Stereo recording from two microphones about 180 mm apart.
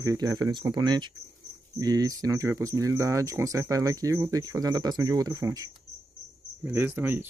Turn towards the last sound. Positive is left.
turn(degrees=-10)  # may be behind; listen again after turning